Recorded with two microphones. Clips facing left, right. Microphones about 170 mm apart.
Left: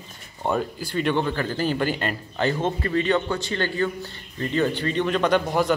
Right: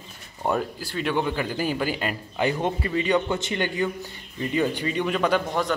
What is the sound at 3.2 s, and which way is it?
A man's voice, 20° right (ahead or behind).